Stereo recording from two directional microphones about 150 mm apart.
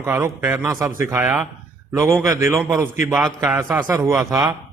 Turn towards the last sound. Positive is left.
turn(degrees=-20)  # may be behind; listen again after turning